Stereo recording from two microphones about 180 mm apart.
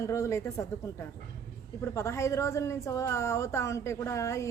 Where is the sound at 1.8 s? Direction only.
15° left (ahead or behind).